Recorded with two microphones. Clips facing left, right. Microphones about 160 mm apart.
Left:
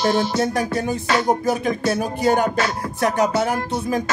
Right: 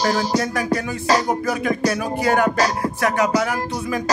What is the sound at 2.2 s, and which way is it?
Music, 70° right (ahead or behind).